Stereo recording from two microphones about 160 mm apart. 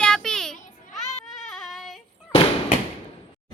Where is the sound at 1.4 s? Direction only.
Centre (ahead or behind).